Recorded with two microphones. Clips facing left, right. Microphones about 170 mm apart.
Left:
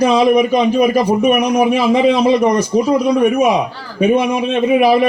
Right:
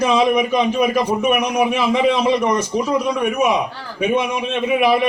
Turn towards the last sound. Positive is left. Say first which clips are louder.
# left 5 dB
turn(degrees=35)  # may be behind; listen again after turning